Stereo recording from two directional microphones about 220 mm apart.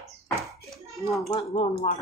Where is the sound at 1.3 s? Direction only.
25° left (ahead or behind).